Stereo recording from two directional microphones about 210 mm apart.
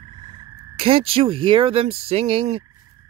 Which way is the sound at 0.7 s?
25° right (ahead or behind).